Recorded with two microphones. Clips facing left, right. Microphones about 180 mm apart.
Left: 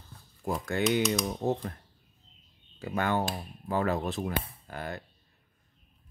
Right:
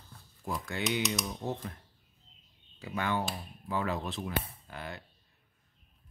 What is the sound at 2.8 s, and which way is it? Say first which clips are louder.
Speech: left 4 dB; 50° left (ahead or behind).